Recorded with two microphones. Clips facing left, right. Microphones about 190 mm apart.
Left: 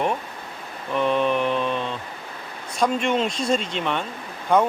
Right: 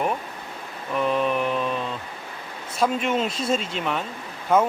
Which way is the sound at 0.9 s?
Centre (ahead or behind).